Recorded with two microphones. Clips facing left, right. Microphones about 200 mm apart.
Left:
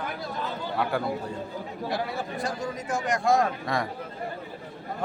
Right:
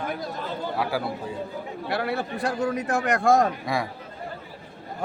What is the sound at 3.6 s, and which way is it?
Speech, 10° right (ahead or behind).